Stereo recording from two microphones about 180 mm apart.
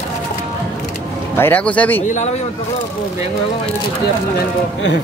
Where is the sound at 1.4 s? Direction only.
10° left (ahead or behind).